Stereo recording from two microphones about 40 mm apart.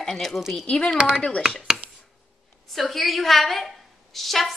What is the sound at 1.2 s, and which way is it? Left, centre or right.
Speech, left.